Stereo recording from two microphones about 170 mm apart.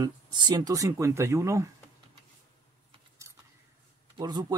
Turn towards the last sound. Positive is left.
turn(degrees=-25)  # may be behind; listen again after turning